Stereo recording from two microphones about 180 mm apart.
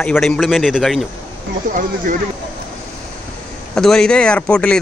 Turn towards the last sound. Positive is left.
turn(degrees=5)  # may be behind; listen again after turning